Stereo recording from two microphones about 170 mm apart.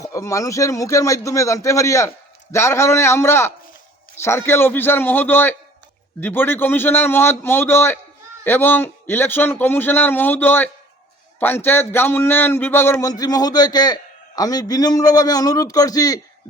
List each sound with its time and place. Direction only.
0.0 s a man's voice: 20° left (ahead or behind)